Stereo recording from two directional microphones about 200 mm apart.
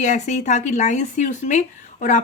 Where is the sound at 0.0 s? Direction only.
35° left (ahead or behind).